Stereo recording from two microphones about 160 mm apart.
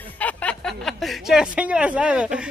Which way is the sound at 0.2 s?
10° left (ahead or behind).